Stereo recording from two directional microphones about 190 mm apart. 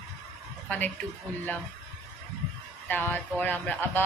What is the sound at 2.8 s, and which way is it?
Speech, 10° left (ahead or behind).